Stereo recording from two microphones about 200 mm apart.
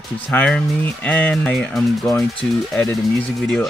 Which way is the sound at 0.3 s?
5° left (ahead or behind).